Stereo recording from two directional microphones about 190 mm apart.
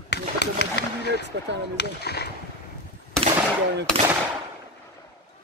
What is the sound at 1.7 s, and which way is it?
Speech, 60° left (ahead or behind).